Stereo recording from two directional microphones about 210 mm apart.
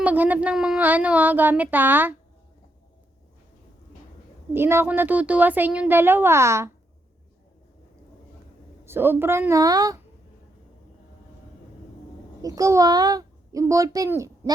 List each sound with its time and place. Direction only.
0.0 s speech: 10° right (ahead or behind)
4.5 s speech: 10° right (ahead or behind)
8.8 s speech: 10° right (ahead or behind)
12.4 s a child's voice: 15° right (ahead or behind)